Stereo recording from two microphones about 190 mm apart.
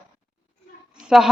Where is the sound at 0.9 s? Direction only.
5° right (ahead or behind).